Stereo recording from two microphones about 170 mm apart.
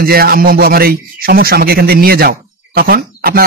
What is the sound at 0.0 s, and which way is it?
Speech, 60° right (ahead or behind).